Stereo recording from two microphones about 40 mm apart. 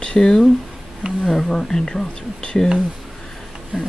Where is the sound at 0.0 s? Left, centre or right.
Centre.